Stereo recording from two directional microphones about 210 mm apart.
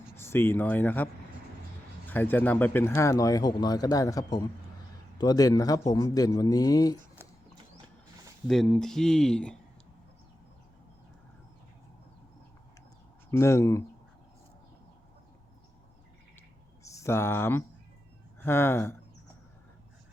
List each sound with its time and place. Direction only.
0.2 s speech: 10° left (ahead or behind)
7.2 s horse: 10° right (ahead or behind)
8.4 s speech: centre (ahead or behind)
13.3 s speech: 15° left (ahead or behind)
16.8 s speech: 15° left (ahead or behind)